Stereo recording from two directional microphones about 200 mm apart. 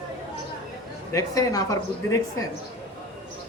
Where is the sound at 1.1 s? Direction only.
15° left (ahead or behind).